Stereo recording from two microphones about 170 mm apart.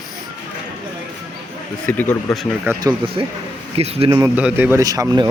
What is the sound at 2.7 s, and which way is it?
Speech, 25° right (ahead or behind).